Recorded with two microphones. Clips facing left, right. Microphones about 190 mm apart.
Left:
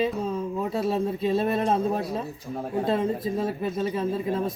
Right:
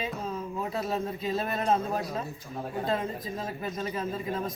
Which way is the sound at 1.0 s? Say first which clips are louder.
Left 7 dB; 30° left (ahead or behind).